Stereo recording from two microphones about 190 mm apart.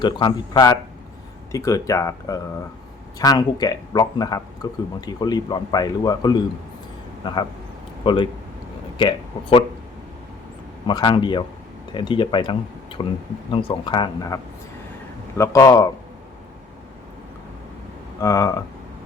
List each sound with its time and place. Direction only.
0.0 s a man's voice: 25° left (ahead or behind)
10.8 s a man's voice: 25° left (ahead or behind)
15.4 s speech: 15° left (ahead or behind)
18.2 s speech: 20° left (ahead or behind)